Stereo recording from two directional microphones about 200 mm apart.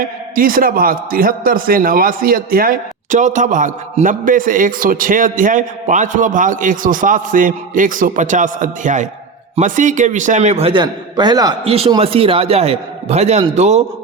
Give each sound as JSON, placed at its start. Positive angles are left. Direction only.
{"t": 0.0, "sound": "a man's voice", "side_deg": -45}